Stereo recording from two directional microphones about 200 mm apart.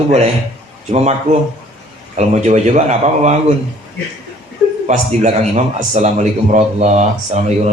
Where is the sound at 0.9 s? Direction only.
35° right (ahead or behind).